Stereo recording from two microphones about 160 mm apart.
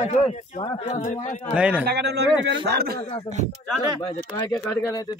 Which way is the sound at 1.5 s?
10° right (ahead or behind).